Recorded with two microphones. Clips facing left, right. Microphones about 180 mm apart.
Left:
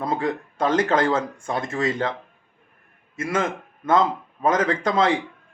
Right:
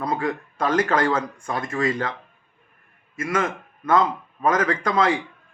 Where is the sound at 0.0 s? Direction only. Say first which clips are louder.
Left 1 dB; 25° left (ahead or behind).